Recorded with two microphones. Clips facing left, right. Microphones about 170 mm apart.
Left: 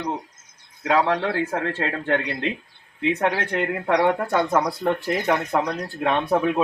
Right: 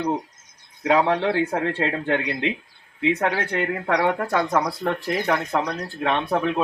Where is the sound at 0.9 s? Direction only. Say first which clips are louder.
Right 1 dB; 20° right (ahead or behind).